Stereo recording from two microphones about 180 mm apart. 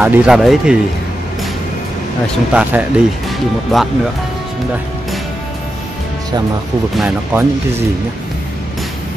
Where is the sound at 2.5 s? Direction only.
10° right (ahead or behind).